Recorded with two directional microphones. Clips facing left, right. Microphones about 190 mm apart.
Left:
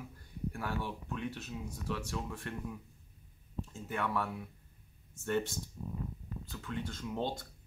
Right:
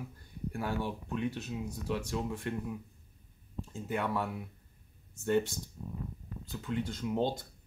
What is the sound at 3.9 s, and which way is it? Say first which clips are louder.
Speech: right 2 dB; 15° right (ahead or behind).